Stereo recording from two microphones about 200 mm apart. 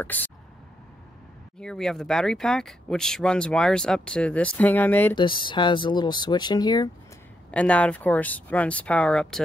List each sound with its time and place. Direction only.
0.0 s speech: 10° left (ahead or behind)
1.6 s speech: centre (ahead or behind)
5.1 s speech: 25° left (ahead or behind)
7.5 s speech: 5° left (ahead or behind)